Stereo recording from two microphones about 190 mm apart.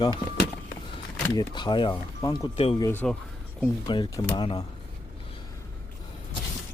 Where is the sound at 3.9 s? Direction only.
25° left (ahead or behind).